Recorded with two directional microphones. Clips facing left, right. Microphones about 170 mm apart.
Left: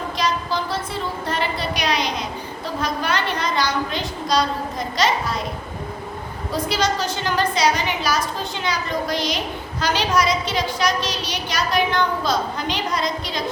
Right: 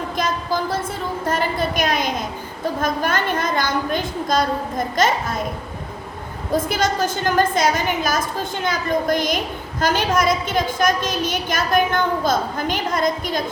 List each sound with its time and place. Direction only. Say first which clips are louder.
0.2 s a sound: right 1 dB; 50° right (ahead or behind)
2.8 s a woman's voice: right 1 dB; 50° right (ahead or behind)
6.5 s a woman's voice: right 2 dB; 50° right (ahead or behind)